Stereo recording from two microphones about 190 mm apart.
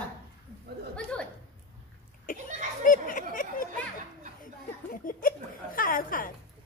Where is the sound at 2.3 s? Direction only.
45° left (ahead or behind).